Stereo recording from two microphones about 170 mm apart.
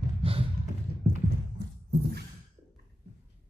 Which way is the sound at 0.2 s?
35° right (ahead or behind).